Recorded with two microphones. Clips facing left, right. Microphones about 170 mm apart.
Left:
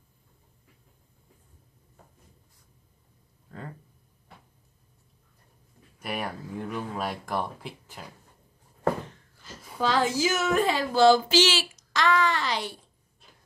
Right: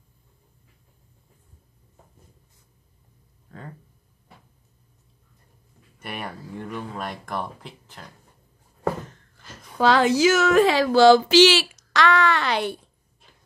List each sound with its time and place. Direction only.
3.4 s a sound: centre (ahead or behind)
5.9 s speech: centre (ahead or behind)
9.8 s a woman's voice: 75° right (ahead or behind)